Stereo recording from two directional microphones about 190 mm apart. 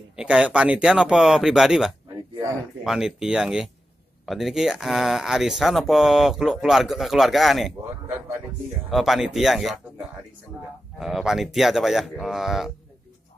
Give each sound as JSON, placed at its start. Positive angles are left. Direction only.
{"t": 0.1, "sound": "speech", "side_deg": -5}
{"t": 2.0, "sound": "a sound", "side_deg": -15}
{"t": 2.8, "sound": "speech", "side_deg": -5}
{"t": 8.9, "sound": "speech", "side_deg": 0}